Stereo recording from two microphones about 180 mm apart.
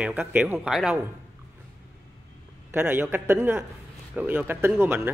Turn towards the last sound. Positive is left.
turn(degrees=-15)  # may be behind; listen again after turning